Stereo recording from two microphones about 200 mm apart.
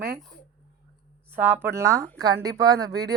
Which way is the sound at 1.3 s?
10° right (ahead or behind).